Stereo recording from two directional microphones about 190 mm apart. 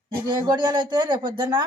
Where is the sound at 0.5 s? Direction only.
25° right (ahead or behind).